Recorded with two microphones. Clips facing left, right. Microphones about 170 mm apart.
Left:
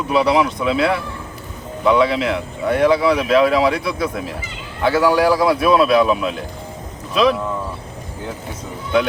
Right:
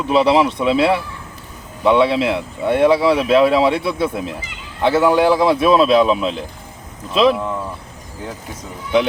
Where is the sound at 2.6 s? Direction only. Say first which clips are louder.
Right 1 dB; 30° right (ahead or behind).